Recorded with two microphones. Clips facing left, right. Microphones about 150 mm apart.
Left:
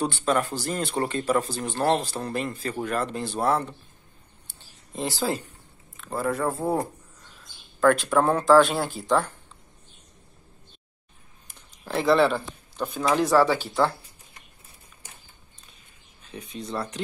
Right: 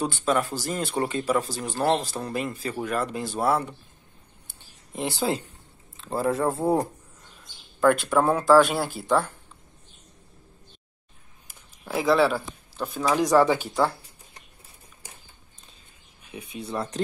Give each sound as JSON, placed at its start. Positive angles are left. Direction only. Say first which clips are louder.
{"t": 0.2, "sound": "speech", "louder": "even", "side_deg": -5}
{"t": 4.9, "sound": "speech", "louder": "right 1 dB", "side_deg": -15}
{"t": 5.9, "sound": "speech", "louder": "right 2 dB", "side_deg": -30}
{"t": 6.6, "sound": "speech", "louder": "right 3 dB", "side_deg": -15}
{"t": 11.4, "sound": "speech", "louder": "even", "side_deg": -5}
{"t": 16.3, "sound": "speech", "louder": "even", "side_deg": -10}